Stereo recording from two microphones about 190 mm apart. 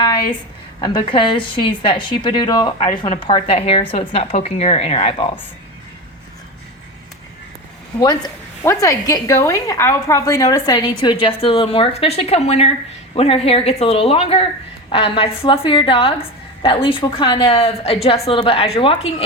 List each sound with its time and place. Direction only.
0.8 s a woman's voice: 25° left (ahead or behind)
7.9 s a woman's voice: 20° left (ahead or behind)